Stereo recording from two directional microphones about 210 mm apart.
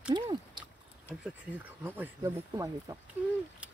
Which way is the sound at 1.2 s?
5° right (ahead or behind).